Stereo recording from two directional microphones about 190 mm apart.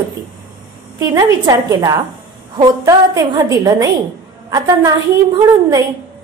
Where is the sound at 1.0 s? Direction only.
20° right (ahead or behind).